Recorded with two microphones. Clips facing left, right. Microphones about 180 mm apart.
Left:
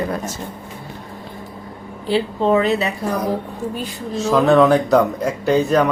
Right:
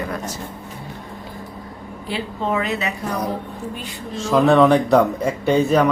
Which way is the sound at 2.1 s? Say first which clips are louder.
Left 7 dB; 30° left (ahead or behind).